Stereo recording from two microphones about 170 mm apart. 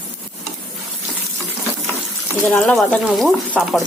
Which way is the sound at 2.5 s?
5° left (ahead or behind).